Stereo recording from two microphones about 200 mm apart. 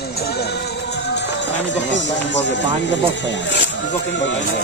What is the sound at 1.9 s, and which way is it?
Speech, 65° left (ahead or behind).